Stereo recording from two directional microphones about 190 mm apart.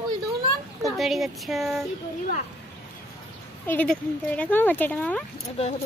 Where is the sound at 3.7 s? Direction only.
10° left (ahead or behind).